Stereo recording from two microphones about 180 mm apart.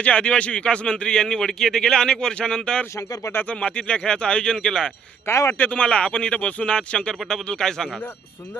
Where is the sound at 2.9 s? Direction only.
20° left (ahead or behind).